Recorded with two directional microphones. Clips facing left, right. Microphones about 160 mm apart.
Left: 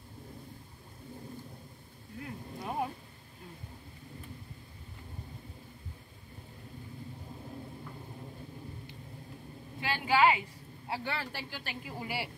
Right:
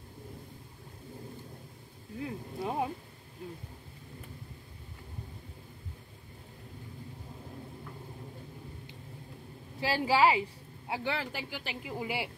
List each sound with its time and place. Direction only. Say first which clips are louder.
2.2 s a sound: right 4 dB; 20° right (ahead or behind)
9.8 s a woman's voice: right 1 dB; 35° right (ahead or behind)
10.9 s speech: right 3 dB; 15° right (ahead or behind)